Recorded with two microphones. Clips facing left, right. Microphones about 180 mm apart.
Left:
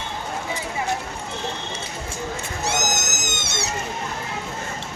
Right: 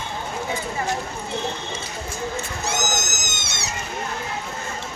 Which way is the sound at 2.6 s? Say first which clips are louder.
Left 2 dB; 65° left (ahead or behind).